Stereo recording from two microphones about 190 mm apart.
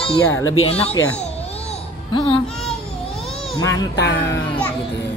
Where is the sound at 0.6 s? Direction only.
30° left (ahead or behind).